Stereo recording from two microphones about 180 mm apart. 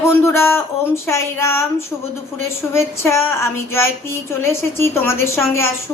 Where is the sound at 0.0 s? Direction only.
15° left (ahead or behind).